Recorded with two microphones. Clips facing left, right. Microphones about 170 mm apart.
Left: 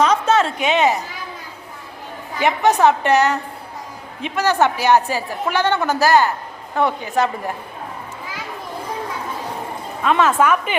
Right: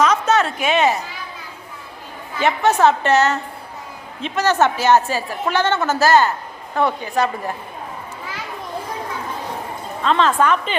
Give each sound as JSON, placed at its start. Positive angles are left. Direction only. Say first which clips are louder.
{"t": 0.0, "sound": "a sound", "louder": "left 1 dB", "side_deg": 30}
{"t": 2.4, "sound": "a woman's voice", "louder": "even", "side_deg": 15}
{"t": 10.0, "sound": "a woman's voice", "louder": "left 1 dB", "side_deg": 10}